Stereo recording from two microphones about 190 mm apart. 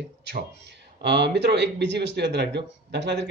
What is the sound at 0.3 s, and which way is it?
Speech, 65° right (ahead or behind).